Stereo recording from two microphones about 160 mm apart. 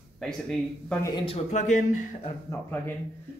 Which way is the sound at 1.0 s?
30° left (ahead or behind).